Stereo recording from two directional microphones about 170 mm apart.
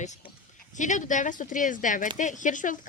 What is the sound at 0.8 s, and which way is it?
Speech, 45° left (ahead or behind).